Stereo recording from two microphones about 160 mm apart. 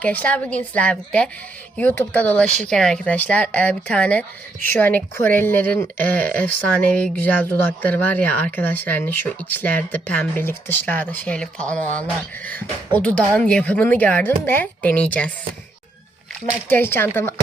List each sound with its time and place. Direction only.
0.0 s speech: 10° left (ahead or behind)
13.0 s speech: 10° left (ahead or behind)
16.6 s speech: 10° left (ahead or behind)